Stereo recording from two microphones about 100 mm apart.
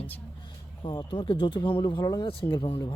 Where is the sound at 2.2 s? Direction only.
55° left (ahead or behind).